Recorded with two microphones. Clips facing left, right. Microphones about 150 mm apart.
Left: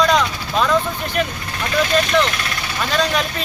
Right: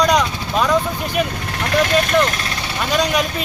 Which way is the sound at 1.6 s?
65° right (ahead or behind).